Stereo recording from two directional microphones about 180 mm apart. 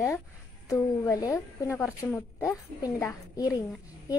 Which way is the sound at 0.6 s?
20° left (ahead or behind).